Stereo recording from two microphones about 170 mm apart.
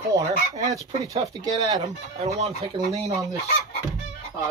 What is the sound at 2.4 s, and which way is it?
Speech, 40° right (ahead or behind).